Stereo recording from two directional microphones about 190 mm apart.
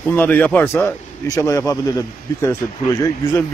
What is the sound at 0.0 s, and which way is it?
Speech, 10° left (ahead or behind).